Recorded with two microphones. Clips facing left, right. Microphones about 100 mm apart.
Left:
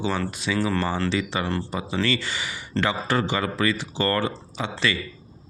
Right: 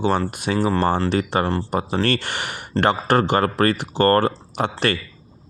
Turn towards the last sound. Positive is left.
turn(degrees=-60)  # may be behind; listen again after turning